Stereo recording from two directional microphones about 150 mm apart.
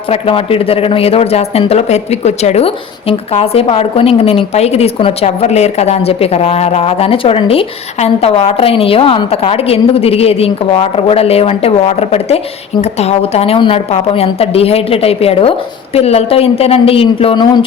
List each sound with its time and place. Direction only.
0.1 s a man's voice: 40° left (ahead or behind)